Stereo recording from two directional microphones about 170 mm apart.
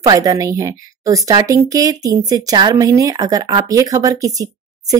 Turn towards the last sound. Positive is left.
turn(degrees=-20)  # may be behind; listen again after turning